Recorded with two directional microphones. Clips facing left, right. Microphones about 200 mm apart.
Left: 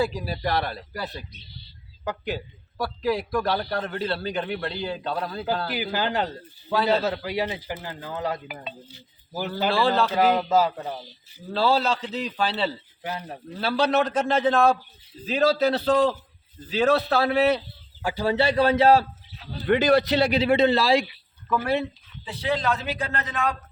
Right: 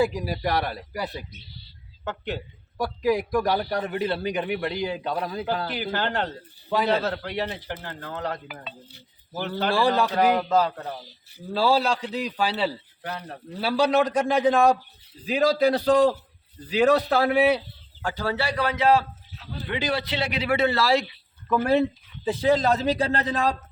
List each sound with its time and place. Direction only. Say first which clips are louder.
0.0 s a man's voice: right 2 dB; 15° right (ahead or behind)
2.0 s a man's voice: left 1 dB; centre (ahead or behind)
2.7 s a man's voice: right 2 dB; 15° right (ahead or behind)
5.6 s a man's voice: left 1 dB; centre (ahead or behind)
9.3 s a man's voice: even; 5° left (ahead or behind)
9.6 s a man's voice: even; 15° right (ahead or behind)
10.3 s a man's voice: left 1 dB; 5° left (ahead or behind)
11.5 s a man's voice: even; 10° right (ahead or behind)
13.0 s a man's voice: left 2 dB; 5° left (ahead or behind)
13.6 s a man's voice: right 1 dB; 10° right (ahead or behind)
18.0 s a man's voice: left 4 dB; 10° left (ahead or behind); by 19.0 s 35° left (ahead or behind)
19.6 s a man's voice: left 9 dB; 50° left (ahead or behind); by 21.1 s 15° left (ahead or behind)
21.7 s speech: right 4 dB; 45° right (ahead or behind)